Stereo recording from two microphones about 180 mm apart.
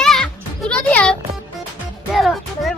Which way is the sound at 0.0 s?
5° left (ahead or behind).